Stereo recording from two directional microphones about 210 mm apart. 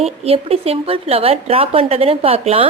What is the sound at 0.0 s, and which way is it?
A woman's voice, 30° right (ahead or behind).